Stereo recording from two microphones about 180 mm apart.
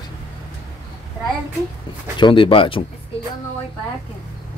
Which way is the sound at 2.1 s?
25° left (ahead or behind).